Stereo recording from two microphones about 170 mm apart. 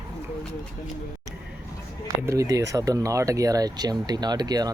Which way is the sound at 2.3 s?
20° right (ahead or behind).